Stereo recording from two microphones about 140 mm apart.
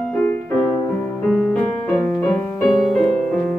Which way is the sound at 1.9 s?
5° left (ahead or behind).